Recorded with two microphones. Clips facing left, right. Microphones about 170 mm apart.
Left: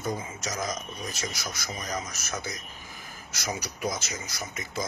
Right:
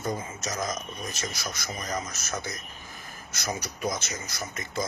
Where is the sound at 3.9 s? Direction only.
10° left (ahead or behind).